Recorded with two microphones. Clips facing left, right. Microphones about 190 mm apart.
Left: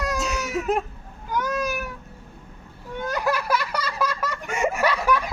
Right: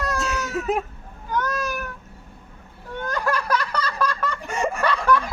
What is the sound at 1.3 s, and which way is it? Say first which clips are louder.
Cat: even; 10° left (ahead or behind).